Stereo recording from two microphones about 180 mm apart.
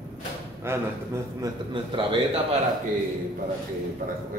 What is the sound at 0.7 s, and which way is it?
Speech, 15° right (ahead or behind).